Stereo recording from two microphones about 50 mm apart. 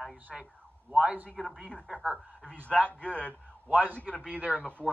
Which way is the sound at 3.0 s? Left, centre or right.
Left.